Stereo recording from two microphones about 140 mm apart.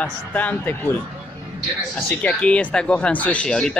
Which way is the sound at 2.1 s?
10° left (ahead or behind).